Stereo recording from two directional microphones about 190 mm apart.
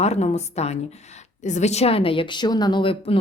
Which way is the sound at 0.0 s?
35° left (ahead or behind).